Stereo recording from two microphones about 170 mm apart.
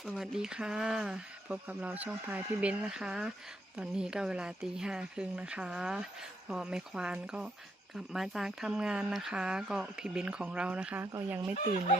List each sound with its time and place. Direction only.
0.0 s speech: centre (ahead or behind); by 11.4 s 15° right (ahead or behind)
11.5 s speech: 50° left (ahead or behind)